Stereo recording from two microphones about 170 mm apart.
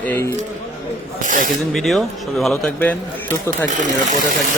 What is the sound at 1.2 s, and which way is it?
Speech, 50° right (ahead or behind).